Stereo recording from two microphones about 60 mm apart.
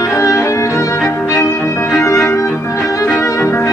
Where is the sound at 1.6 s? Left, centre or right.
Left.